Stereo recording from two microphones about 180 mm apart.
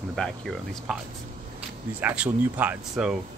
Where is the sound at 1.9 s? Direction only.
10° right (ahead or behind).